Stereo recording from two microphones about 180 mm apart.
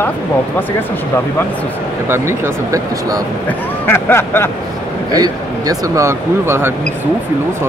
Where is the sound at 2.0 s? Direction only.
15° right (ahead or behind).